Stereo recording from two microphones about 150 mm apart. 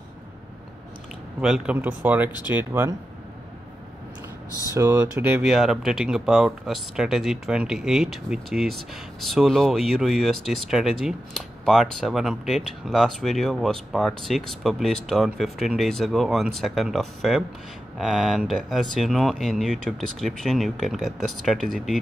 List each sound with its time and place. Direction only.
1.4 s speech: 5° right (ahead or behind)
4.7 s speech: 15° right (ahead or behind)
5.4 s speech: 5° right (ahead or behind)